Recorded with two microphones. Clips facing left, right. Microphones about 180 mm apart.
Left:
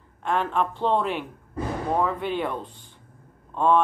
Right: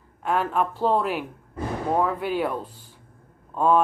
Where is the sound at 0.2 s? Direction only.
5° right (ahead or behind).